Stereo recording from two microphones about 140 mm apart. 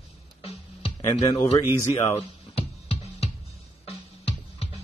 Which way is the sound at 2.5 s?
45° left (ahead or behind).